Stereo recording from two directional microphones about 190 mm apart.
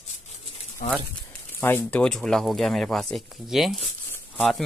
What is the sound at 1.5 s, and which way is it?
Speech, 10° left (ahead or behind).